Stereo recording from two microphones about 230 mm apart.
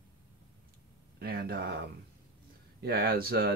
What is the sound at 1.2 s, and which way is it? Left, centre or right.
Speech, right.